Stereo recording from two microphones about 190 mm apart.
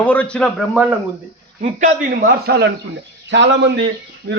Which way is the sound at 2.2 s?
60° right (ahead or behind).